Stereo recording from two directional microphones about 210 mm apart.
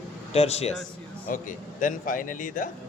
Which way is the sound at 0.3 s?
30° left (ahead or behind).